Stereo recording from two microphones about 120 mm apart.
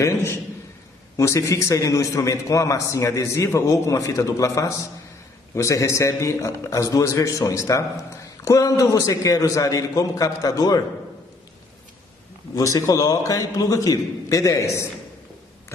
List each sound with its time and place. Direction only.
0.0 s a sound: 25° left (ahead or behind)
1.1 s a man's voice: 25° left (ahead or behind)
12.5 s a man's voice: 30° left (ahead or behind)